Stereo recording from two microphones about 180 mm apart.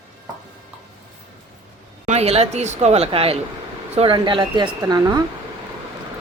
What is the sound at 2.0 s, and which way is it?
A woman's voice, 35° right (ahead or behind).